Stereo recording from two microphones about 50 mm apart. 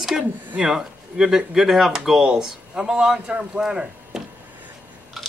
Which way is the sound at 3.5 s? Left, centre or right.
Centre.